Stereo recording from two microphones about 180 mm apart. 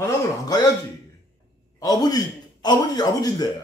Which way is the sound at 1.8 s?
20° left (ahead or behind).